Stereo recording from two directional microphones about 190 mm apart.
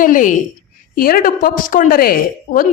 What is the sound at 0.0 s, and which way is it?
A woman's voice, 45° left (ahead or behind).